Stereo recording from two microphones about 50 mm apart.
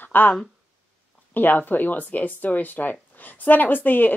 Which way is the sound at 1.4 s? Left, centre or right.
Left.